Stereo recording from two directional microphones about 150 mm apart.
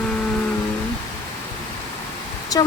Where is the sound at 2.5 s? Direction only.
25° left (ahead or behind).